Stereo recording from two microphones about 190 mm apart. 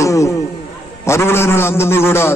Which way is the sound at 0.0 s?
15° left (ahead or behind).